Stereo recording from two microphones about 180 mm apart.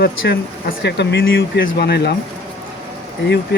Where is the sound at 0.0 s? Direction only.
70° left (ahead or behind).